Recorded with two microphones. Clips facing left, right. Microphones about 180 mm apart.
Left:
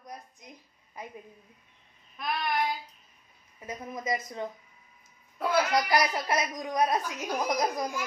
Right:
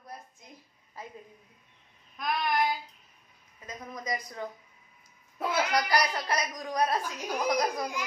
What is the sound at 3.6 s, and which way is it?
Speech, 25° left (ahead or behind).